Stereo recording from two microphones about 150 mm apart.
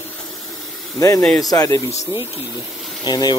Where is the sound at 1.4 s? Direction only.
25° left (ahead or behind).